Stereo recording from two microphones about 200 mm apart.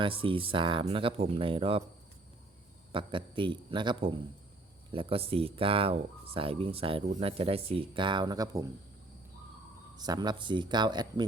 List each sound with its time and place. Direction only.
0.0 s speech: 25° right (ahead or behind)
2.9 s speech: 25° right (ahead or behind)
10.0 s speech: 20° right (ahead or behind)